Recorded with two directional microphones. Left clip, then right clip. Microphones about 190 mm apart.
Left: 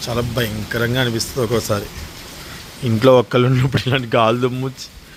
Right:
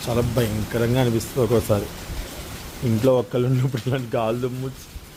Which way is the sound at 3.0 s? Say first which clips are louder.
Left 8 dB; 20° left (ahead or behind).